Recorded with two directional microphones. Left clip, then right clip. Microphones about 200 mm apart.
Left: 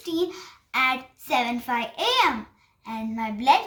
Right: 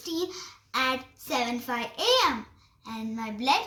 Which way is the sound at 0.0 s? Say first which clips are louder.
Left 5 dB; 40° left (ahead or behind).